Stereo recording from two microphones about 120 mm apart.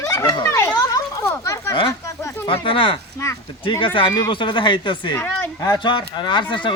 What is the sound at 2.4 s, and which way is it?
Speech, 45° left (ahead or behind).